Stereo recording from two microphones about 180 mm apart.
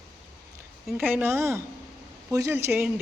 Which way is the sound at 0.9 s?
10° right (ahead or behind).